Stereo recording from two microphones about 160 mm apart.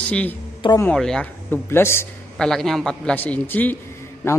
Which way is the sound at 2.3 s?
5° left (ahead or behind).